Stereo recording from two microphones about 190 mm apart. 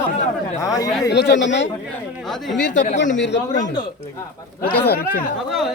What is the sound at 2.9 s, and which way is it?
Speech, 70° left (ahead or behind).